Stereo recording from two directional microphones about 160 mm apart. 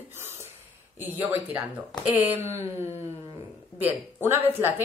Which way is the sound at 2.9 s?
40° left (ahead or behind).